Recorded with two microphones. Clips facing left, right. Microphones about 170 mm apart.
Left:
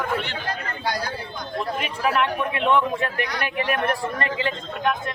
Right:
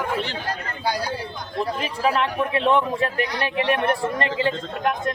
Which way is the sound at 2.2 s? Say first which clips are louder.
Right 1 dB; 30° right (ahead or behind).